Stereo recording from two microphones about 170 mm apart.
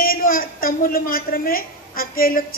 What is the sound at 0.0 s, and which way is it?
A woman's voice, 55° left (ahead or behind).